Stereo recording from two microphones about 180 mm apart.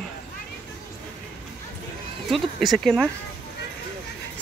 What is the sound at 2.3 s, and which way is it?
Speech, centre (ahead or behind).